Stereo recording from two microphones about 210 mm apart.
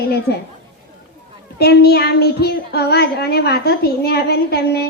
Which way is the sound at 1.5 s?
50° left (ahead or behind).